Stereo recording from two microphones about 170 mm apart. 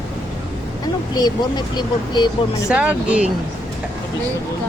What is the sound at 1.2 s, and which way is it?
Speech, 25° left (ahead or behind).